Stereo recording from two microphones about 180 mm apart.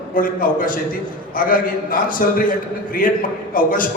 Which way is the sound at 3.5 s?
50° left (ahead or behind).